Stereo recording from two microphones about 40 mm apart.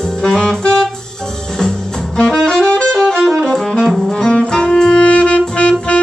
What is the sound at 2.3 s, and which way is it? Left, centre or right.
Saxophone, centre.